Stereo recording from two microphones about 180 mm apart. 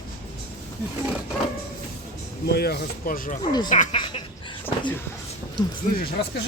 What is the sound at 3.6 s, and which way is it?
Speech, 45° left (ahead or behind).